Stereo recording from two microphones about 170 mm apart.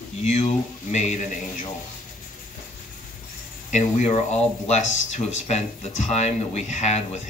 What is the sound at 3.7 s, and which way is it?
Speech, 40° left (ahead or behind).